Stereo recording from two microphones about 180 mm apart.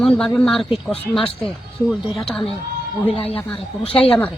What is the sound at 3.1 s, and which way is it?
Speech, 35° left (ahead or behind).